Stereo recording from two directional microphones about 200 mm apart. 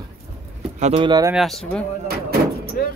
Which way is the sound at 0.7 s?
30° right (ahead or behind).